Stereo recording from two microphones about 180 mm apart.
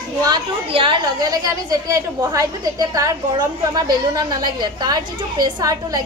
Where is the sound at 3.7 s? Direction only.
20° right (ahead or behind).